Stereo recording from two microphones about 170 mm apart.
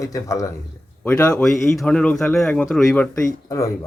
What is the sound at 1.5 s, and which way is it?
A man's voice, centre (ahead or behind).